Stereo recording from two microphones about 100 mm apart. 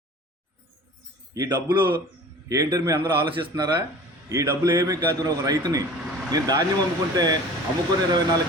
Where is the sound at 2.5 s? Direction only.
40° right (ahead or behind).